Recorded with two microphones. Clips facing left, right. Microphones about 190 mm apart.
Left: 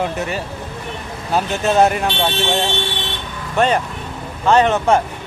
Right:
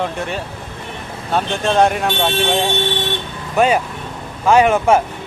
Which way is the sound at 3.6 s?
10° right (ahead or behind).